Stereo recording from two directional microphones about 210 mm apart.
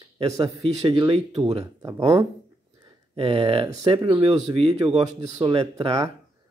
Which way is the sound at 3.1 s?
25° right (ahead or behind).